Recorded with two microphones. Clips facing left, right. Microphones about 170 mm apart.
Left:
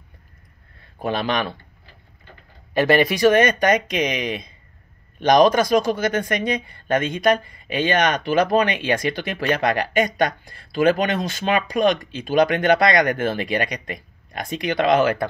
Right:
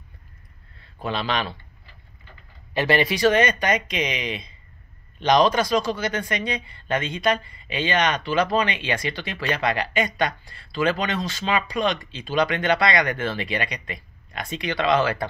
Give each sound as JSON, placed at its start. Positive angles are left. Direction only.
{"t": 0.9, "sound": "a man's voice", "side_deg": 50}
{"t": 2.7, "sound": "a man's voice", "side_deg": 45}